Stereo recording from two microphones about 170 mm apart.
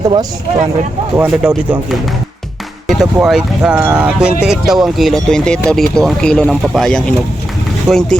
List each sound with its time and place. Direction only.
0.0 s speech: 20° right (ahead or behind)
1.1 s speech: 10° right (ahead or behind)
2.8 s speech: centre (ahead or behind)